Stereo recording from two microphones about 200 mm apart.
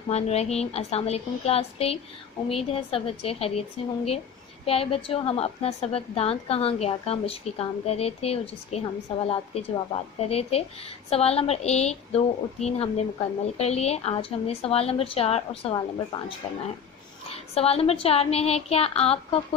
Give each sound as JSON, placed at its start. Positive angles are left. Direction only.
{"t": 0.1, "sound": "a woman's voice", "side_deg": 30}